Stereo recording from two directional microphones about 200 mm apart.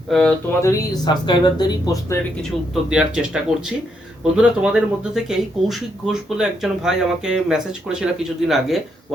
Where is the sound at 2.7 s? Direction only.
5° right (ahead or behind).